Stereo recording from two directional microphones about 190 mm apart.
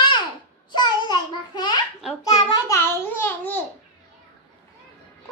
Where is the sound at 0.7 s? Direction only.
25° left (ahead or behind).